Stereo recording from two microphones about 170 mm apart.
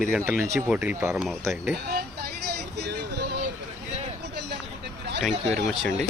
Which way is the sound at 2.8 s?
80° right.